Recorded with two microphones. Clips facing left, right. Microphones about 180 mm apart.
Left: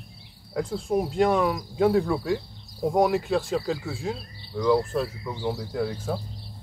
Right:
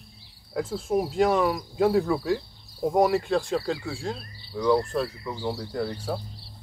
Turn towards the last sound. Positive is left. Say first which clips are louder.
# left 1 dB
turn(degrees=0)  # may be behind; listen again after turning